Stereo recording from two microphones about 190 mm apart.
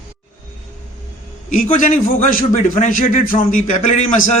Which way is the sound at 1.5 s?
45° left (ahead or behind).